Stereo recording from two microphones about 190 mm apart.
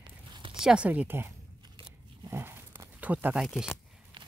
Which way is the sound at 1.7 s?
25° right (ahead or behind).